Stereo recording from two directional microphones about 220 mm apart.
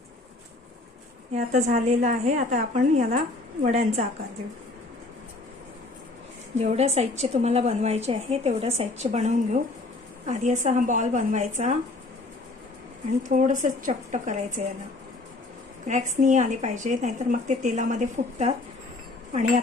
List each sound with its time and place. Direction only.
1.3 s a woman's voice: 30° right (ahead or behind)
6.5 s a woman's voice: 30° right (ahead or behind)
13.3 s a woman's voice: 35° right (ahead or behind)
15.9 s a woman's voice: 35° right (ahead or behind)